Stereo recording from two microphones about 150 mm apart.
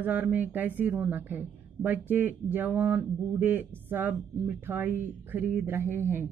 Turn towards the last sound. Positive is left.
turn(degrees=-15)  # may be behind; listen again after turning